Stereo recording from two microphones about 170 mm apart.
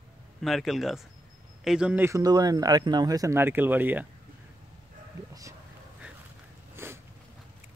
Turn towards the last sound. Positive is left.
turn(degrees=-15)  # may be behind; listen again after turning